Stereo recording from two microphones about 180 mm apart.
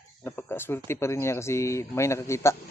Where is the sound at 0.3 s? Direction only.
10° left (ahead or behind).